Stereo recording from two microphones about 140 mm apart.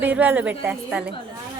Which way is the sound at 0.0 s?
10° right (ahead or behind).